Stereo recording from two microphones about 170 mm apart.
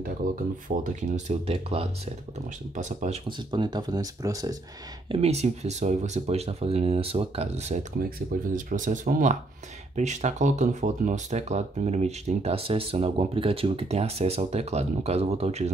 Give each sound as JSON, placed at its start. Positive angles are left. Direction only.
{"t": 0.0, "sound": "speech", "side_deg": -50}
{"t": 2.7, "sound": "speech", "side_deg": -45}
{"t": 3.3, "sound": "speech", "side_deg": -25}
{"t": 5.0, "sound": "speech", "side_deg": -35}
{"t": 8.2, "sound": "speech", "side_deg": -55}